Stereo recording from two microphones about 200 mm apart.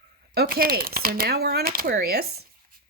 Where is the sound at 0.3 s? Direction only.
50° right (ahead or behind).